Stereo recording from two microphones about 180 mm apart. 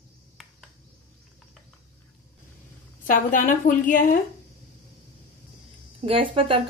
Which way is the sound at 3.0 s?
45° left (ahead or behind).